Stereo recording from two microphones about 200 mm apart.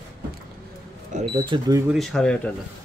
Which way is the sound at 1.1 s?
40° right (ahead or behind).